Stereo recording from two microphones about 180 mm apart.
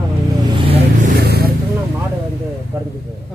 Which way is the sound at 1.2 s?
60° right (ahead or behind).